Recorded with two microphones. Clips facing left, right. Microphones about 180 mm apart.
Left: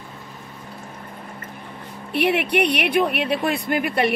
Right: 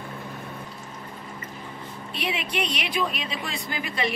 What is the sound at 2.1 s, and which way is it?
Speech, 60° left (ahead or behind).